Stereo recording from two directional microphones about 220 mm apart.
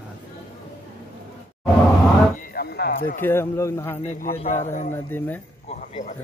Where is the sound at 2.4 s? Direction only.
45° left (ahead or behind).